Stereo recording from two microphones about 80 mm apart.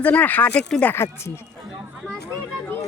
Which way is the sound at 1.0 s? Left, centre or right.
Left.